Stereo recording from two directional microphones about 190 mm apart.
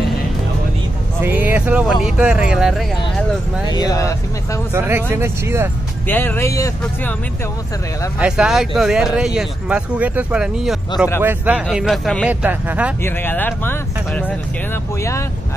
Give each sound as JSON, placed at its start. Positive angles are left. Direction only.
{"t": 1.2, "sound": "speech", "side_deg": -10}
{"t": 3.6, "sound": "speech", "side_deg": 20}
{"t": 4.7, "sound": "speech", "side_deg": -10}
{"t": 6.0, "sound": "speech", "side_deg": 10}
{"t": 8.2, "sound": "speech", "side_deg": -5}
{"t": 13.0, "sound": "speech", "side_deg": 10}